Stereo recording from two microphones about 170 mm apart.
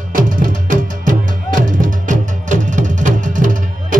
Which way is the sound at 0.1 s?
55° right (ahead or behind).